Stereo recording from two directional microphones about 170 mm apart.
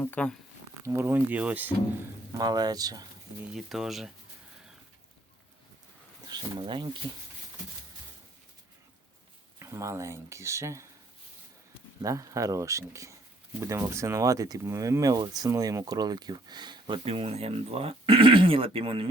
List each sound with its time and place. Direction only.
0.0 s speech: 10° left (ahead or behind)
0.8 s speech: 15° right (ahead or behind)
2.4 s speech: 25° right (ahead or behind)
3.5 s speech: centre (ahead or behind)
6.2 s speech: 25° right (ahead or behind)
9.6 s speech: 15° right (ahead or behind)
12.0 s speech: 20° right (ahead or behind)